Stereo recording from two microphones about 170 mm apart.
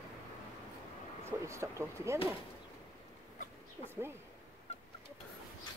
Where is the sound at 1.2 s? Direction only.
15° right (ahead or behind).